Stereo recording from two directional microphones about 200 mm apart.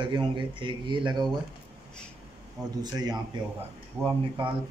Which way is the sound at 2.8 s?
20° right (ahead or behind).